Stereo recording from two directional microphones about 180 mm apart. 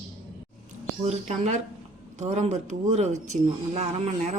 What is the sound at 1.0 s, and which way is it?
Speech, 40° right (ahead or behind).